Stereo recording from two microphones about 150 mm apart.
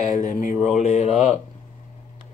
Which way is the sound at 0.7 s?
50° left (ahead or behind).